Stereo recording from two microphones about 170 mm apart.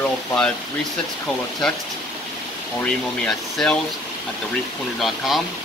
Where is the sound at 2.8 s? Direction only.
5° left (ahead or behind).